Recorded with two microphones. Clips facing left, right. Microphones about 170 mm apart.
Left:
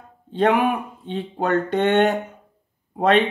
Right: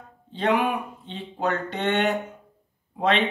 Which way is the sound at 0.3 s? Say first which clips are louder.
Left 4 dB; 50° left (ahead or behind).